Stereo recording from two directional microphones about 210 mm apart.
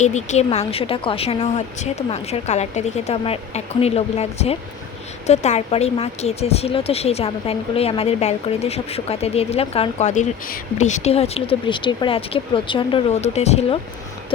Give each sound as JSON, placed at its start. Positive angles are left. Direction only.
{"t": 0.0, "sound": "a woman's voice", "side_deg": 35}